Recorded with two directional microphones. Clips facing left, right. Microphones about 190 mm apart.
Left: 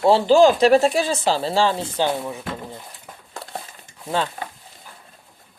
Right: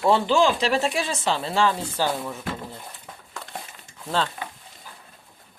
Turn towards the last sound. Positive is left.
turn(degrees=45)  # may be behind; listen again after turning